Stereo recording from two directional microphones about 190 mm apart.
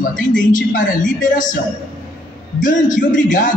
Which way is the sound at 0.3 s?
45° left (ahead or behind).